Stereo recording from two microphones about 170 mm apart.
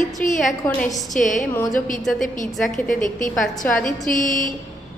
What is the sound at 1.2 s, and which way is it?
Speech, 50° left (ahead or behind).